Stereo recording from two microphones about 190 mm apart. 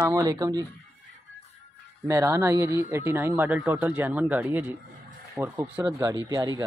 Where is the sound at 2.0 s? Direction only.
15° right (ahead or behind).